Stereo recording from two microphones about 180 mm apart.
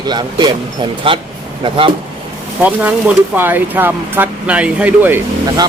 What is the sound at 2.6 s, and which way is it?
Speech, 10° right (ahead or behind).